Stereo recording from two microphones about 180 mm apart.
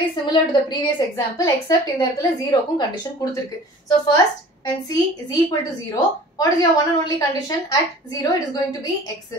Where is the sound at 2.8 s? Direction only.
25° left (ahead or behind).